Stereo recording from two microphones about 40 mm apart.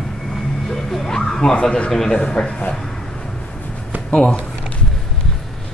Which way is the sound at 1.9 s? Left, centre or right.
Centre.